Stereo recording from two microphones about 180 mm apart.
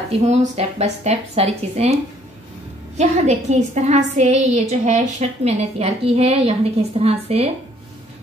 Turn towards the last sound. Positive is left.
turn(degrees=-35)  # may be behind; listen again after turning